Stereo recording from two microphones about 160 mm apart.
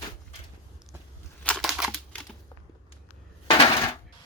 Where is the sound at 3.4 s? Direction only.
30° left (ahead or behind).